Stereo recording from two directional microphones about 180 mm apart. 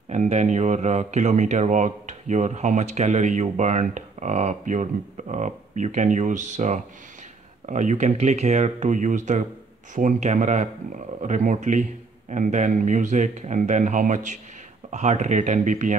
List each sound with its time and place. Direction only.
0.1 s speech: 40° right (ahead or behind)